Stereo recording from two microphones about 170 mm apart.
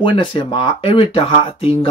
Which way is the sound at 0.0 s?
30° left (ahead or behind).